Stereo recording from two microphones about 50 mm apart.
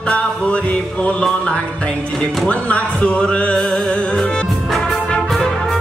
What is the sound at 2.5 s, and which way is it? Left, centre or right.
Music, left.